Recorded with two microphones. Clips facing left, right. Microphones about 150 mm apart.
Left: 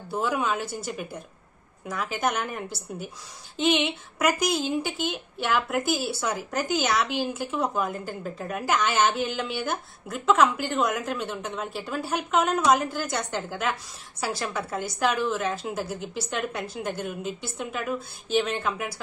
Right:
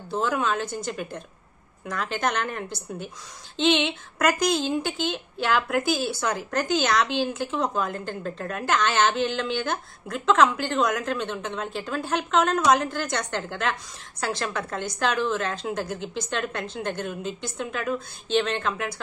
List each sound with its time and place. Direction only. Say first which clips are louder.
0.1 s a woman's voice: right 1 dB; 10° left (ahead or behind)